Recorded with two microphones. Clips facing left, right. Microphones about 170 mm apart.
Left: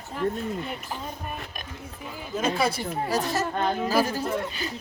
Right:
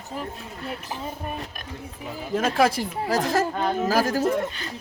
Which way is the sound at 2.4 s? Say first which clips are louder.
Right 4 dB; 90° right.